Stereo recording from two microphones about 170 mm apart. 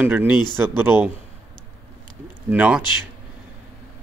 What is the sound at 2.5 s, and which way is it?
Speech, 10° right (ahead or behind).